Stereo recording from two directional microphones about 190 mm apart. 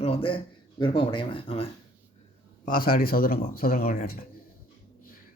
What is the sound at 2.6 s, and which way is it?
Speech, 50° left (ahead or behind).